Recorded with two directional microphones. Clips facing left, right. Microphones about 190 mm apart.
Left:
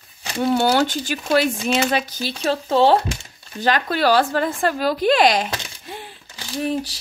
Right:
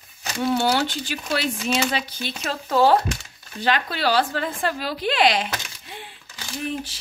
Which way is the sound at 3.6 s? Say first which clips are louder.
Left 4 dB; 45° left (ahead or behind).